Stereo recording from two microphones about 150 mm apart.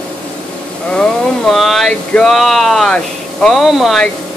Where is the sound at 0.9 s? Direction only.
Centre (ahead or behind).